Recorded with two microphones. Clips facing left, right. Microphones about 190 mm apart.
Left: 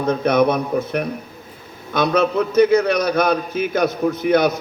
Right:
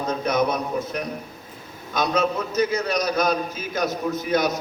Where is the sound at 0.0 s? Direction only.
60° left (ahead or behind).